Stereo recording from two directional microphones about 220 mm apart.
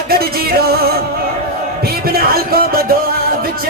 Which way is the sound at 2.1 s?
45° right (ahead or behind).